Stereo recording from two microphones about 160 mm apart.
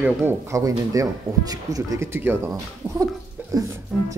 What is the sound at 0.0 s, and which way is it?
Speech, 15° right (ahead or behind).